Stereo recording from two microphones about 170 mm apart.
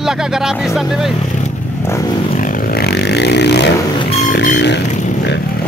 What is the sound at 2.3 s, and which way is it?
Vehicle, 55° left (ahead or behind).